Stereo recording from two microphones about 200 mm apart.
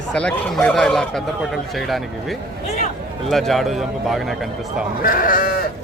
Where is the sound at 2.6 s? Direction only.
35° left (ahead or behind).